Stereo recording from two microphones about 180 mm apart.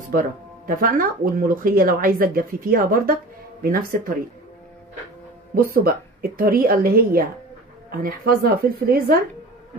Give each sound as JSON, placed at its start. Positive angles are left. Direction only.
{"t": 0.1, "sound": "speech", "side_deg": -50}
{"t": 5.5, "sound": "a woman's voice", "side_deg": -55}